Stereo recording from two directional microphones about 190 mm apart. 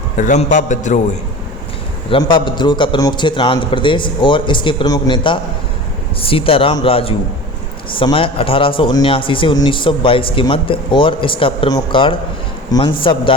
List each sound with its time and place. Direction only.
0.2 s a man's voice: 40° left (ahead or behind)
2.0 s a man's voice: 25° left (ahead or behind)